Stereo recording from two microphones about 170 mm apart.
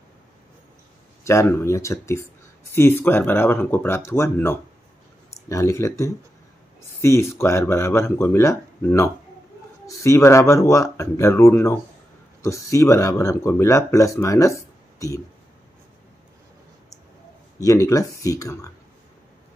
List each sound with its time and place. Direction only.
1.2 s speech: 15° left (ahead or behind)
17.6 s speech: 20° left (ahead or behind)